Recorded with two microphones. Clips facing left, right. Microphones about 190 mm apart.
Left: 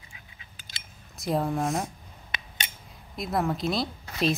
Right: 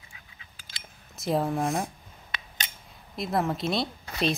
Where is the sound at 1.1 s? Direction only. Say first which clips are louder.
Right 1 dB; centre (ahead or behind).